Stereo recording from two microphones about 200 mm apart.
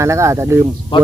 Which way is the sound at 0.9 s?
25° left (ahead or behind).